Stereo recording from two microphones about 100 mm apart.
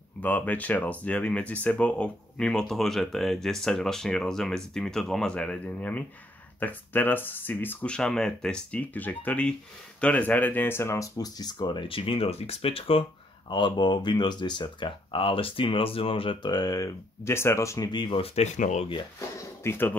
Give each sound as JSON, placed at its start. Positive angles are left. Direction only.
{"t": 0.2, "sound": "speech", "side_deg": 15}
{"t": 11.1, "sound": "speech", "side_deg": 40}
{"t": 11.9, "sound": "speech", "side_deg": 65}
{"t": 13.5, "sound": "speech", "side_deg": 50}
{"t": 16.4, "sound": "speech", "side_deg": 40}
{"t": 17.8, "sound": "speech", "side_deg": 50}
{"t": 18.2, "sound": "speech", "side_deg": 85}
{"t": 19.1, "sound": "a sound", "side_deg": 25}